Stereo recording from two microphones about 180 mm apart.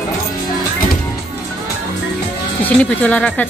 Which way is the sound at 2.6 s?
10° left (ahead or behind).